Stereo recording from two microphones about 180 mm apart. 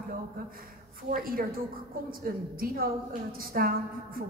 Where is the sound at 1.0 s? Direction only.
55° right (ahead or behind).